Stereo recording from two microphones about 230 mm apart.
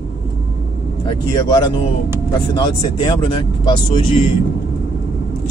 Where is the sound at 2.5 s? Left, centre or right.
Left.